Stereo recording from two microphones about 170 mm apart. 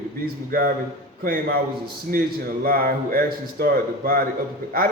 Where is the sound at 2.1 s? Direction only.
55° right (ahead or behind).